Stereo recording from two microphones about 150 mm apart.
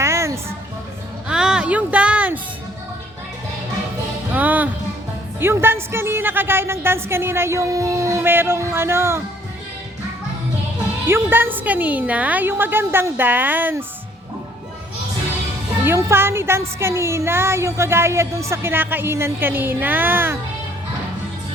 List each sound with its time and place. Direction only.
0.0 s music: 20° right (ahead or behind)
1.3 s a sound: 5° right (ahead or behind)
4.4 s music: 10° right (ahead or behind)
5.4 s speech: 15° right (ahead or behind)
11.1 s speech: 15° right (ahead or behind)
15.8 s speech: 15° right (ahead or behind)